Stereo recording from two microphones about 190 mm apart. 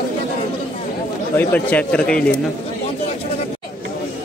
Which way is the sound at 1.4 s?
10° left (ahead or behind).